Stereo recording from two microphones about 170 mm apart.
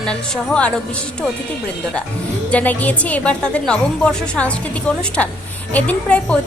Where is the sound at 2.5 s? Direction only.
10° left (ahead or behind).